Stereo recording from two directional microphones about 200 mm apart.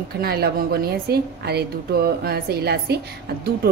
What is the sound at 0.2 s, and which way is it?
A woman's voice, 50° right (ahead or behind).